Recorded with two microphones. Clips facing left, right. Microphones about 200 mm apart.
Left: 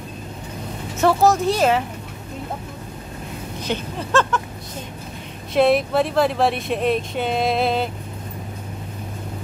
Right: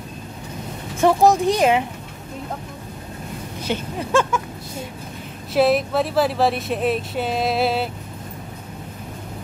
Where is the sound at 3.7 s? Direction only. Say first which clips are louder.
Right 1 dB; 10° right (ahead or behind).